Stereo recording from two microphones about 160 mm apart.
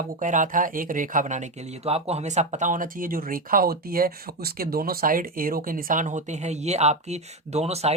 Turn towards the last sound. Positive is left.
turn(degrees=-40)  # may be behind; listen again after turning